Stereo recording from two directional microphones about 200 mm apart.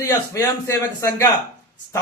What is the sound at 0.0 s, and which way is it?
A man's voice, 15° left (ahead or behind).